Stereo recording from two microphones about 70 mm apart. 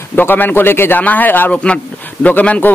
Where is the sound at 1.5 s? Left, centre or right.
Centre.